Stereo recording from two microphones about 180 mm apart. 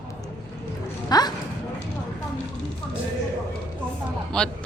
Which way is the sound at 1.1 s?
20° left (ahead or behind).